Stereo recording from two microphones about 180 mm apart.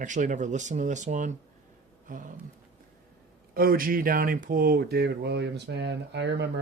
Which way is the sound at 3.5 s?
55° right (ahead or behind).